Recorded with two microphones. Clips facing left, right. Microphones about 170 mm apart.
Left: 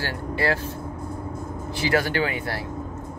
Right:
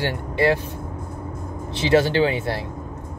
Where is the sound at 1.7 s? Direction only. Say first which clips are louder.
Right 5 dB; 25° right (ahead or behind).